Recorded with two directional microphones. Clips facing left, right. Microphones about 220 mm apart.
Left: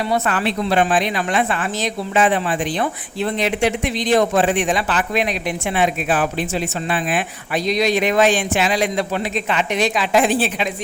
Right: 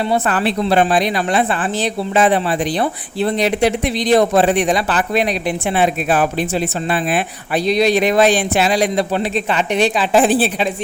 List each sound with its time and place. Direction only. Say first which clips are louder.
0.1 s a woman's voice: right 3 dB; 35° right (ahead or behind)